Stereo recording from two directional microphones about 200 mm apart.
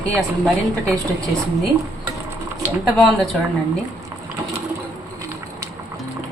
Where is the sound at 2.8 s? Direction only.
Centre (ahead or behind).